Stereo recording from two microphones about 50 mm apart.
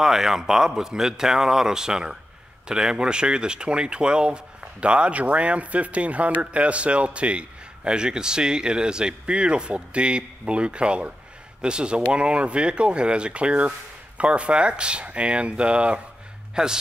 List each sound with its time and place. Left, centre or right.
0.0 s speech: centre